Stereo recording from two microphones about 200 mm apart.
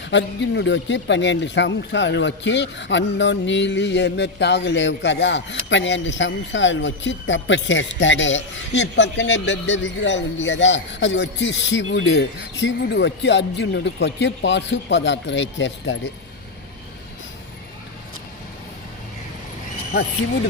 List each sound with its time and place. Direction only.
0.0 s speech: 60° left (ahead or behind)